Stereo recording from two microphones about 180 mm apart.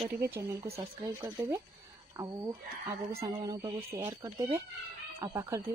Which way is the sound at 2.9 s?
15° right (ahead or behind).